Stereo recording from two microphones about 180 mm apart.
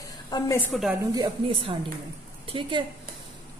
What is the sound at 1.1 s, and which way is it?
Speech, 30° right (ahead or behind).